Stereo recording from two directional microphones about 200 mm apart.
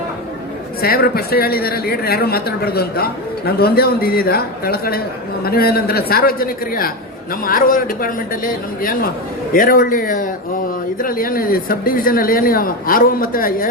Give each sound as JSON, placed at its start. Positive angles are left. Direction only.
{"t": 0.8, "sound": "a woman's voice", "side_deg": 50}